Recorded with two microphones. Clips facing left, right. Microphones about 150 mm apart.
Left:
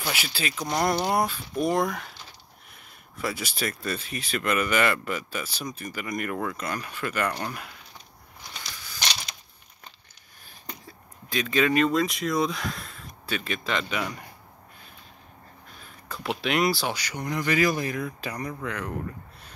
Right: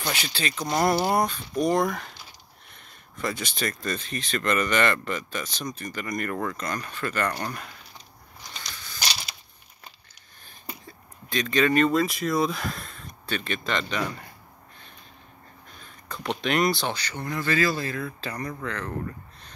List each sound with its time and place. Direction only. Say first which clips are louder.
0.0 s speech: right 1 dB; 5° left (ahead or behind)
8.6 s a sound: right 1 dB; 5° left (ahead or behind)
10.9 s speech: right 1 dB; 5° left (ahead or behind)
15.8 s speech: right 1 dB; 5° left (ahead or behind)